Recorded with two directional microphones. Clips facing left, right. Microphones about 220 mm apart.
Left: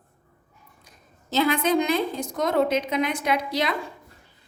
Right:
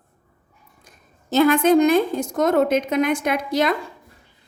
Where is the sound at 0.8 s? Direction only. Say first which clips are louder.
Right 1 dB; 50° right (ahead or behind).